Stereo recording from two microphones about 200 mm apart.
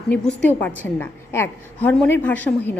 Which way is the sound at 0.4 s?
10° left (ahead or behind).